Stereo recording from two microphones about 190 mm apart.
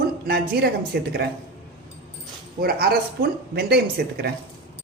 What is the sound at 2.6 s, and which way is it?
Speech, 55° right (ahead or behind).